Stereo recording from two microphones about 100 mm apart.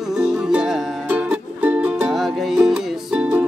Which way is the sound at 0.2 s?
10° right (ahead or behind).